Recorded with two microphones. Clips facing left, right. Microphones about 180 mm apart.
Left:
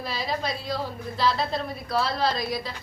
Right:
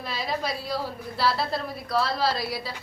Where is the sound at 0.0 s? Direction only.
Centre (ahead or behind).